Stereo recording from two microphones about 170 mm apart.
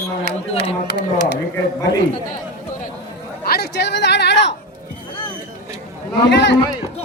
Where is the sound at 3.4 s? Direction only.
70° left (ahead or behind); by 4.5 s 90° left.